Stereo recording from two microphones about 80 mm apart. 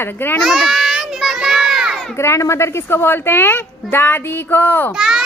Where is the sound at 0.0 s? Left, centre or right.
Left.